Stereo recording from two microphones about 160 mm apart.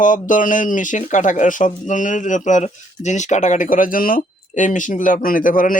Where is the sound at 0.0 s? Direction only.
55° left (ahead or behind).